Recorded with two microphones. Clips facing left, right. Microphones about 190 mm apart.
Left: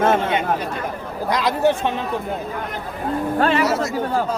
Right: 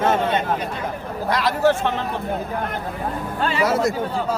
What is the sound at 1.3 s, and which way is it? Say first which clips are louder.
Speech: even; 15° left (ahead or behind).